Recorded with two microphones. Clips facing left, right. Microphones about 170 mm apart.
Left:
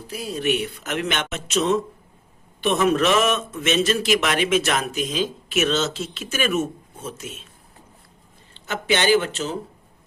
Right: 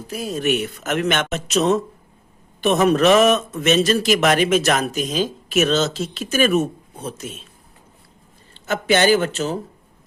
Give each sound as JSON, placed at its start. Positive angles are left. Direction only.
{"t": 0.1, "sound": "a man's voice", "side_deg": -45}
{"t": 8.6, "sound": "speech", "side_deg": -45}